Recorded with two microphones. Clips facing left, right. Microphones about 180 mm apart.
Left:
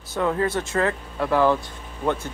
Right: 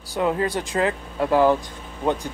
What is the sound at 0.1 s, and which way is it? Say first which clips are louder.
Speech: even; 20° right (ahead or behind).